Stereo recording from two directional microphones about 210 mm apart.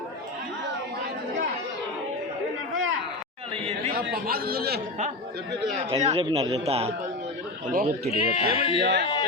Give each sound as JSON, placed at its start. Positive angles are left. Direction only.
{"t": 3.5, "sound": "chatter", "side_deg": -25}
{"t": 3.9, "sound": "speech", "side_deg": -45}
{"t": 5.9, "sound": "speech", "side_deg": -30}
{"t": 7.7, "sound": "speech", "side_deg": -40}
{"t": 8.1, "sound": "speech", "side_deg": 25}
{"t": 8.8, "sound": "speech", "side_deg": -60}